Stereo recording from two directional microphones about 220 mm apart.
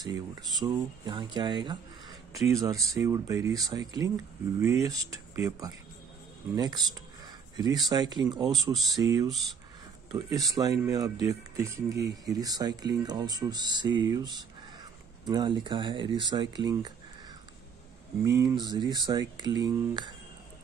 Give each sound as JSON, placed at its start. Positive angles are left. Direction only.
{"t": 0.0, "sound": "speech", "side_deg": -20}
{"t": 10.1, "sound": "speech", "side_deg": -15}
{"t": 18.2, "sound": "speech", "side_deg": -15}